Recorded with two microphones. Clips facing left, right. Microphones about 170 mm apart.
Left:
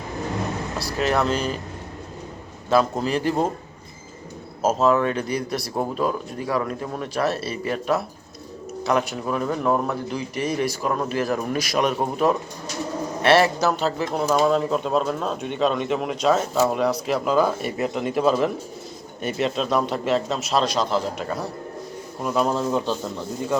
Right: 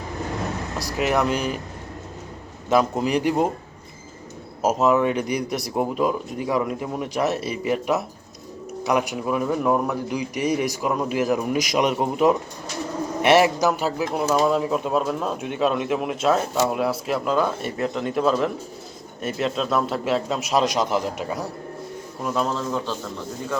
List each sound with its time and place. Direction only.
0.8 s speech: 15° right (ahead or behind)
2.6 s speech: 15° right (ahead or behind)
4.6 s speech: 15° right (ahead or behind)
22.2 s speech: 5° left (ahead or behind)